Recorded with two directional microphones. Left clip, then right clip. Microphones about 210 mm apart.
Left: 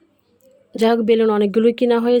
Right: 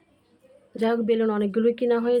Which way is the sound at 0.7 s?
40° left (ahead or behind).